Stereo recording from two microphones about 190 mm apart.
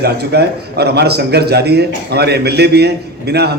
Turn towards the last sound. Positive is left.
turn(degrees=-60)  # may be behind; listen again after turning